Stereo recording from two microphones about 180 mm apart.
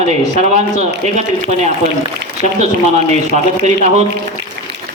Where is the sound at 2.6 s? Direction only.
40° right (ahead or behind).